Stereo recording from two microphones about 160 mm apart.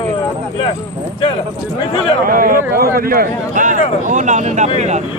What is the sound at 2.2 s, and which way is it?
A man's voice, 60° right (ahead or behind).